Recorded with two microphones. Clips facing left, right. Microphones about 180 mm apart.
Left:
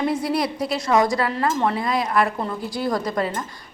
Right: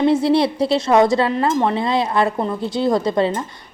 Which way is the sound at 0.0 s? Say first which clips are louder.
Right 7 dB; 25° right (ahead or behind).